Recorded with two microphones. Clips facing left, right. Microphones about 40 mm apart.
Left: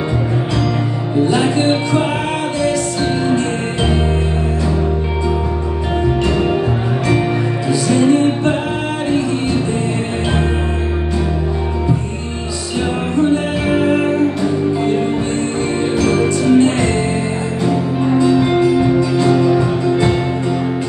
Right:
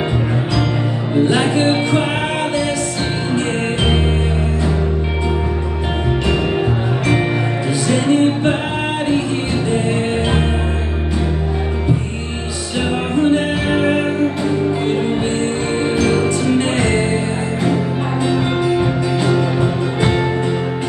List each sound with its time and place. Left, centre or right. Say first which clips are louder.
1.2 s music: left 1 dB; right
3.3 s music: left 1 dB; right
7.8 s music: left 2 dB; right
13.1 s music: even; right
16.0 s music: left 2 dB; right